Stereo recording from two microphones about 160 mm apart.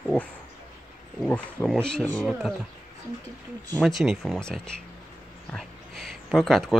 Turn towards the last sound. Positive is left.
turn(degrees=0)  # may be behind; listen again after turning